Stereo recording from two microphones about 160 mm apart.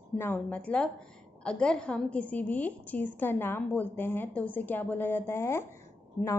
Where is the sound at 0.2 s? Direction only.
10° left (ahead or behind).